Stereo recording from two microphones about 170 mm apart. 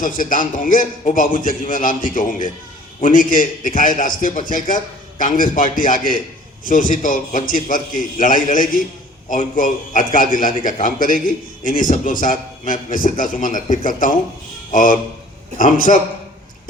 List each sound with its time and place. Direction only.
0.0 s a man's voice: 50° left (ahead or behind)